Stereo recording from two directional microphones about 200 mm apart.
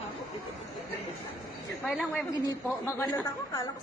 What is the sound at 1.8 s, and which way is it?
Speech, centre (ahead or behind).